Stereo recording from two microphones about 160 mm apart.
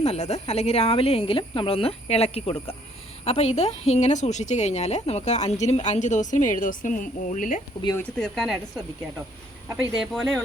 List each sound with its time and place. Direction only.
0.0 s a woman's voice: 40° left (ahead or behind)
8.2 s speech: centre (ahead or behind)
10.0 s speech: centre (ahead or behind)